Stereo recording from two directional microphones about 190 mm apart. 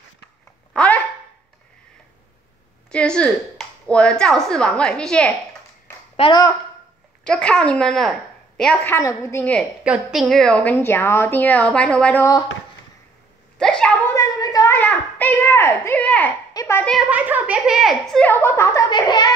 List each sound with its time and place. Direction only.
0.7 s a sound: 5° left (ahead or behind)
2.9 s a woman's voice: 5° left (ahead or behind)
6.1 s a woman's voice: 30° left (ahead or behind)
7.2 s a woman's voice: 5° left (ahead or behind)
9.8 s a woman's voice: 5° right (ahead or behind); by 12.4 s 15° left (ahead or behind)
13.6 s a sound: 5° left (ahead or behind)
16.5 s a woman's voice: 15° left (ahead or behind)
16.9 s a woman's voice: 5° right (ahead or behind); by 19.3 s 20° left (ahead or behind)